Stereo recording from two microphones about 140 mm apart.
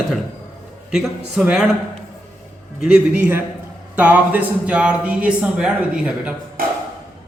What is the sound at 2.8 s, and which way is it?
A man's voice, 10° right (ahead or behind).